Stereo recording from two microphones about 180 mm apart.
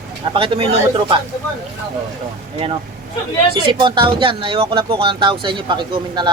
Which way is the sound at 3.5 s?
25° right (ahead or behind).